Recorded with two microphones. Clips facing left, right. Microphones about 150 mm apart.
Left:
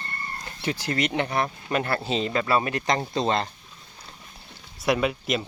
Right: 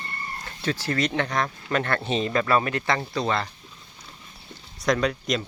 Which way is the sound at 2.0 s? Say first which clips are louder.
Right 1 dB; 25° left (ahead or behind).